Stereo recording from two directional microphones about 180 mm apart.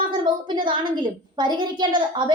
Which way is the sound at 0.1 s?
25° right (ahead or behind).